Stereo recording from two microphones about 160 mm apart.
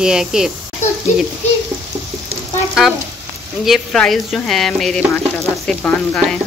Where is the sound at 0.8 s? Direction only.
45° left (ahead or behind).